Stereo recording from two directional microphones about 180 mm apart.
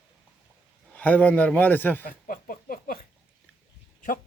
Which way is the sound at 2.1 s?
50° left (ahead or behind).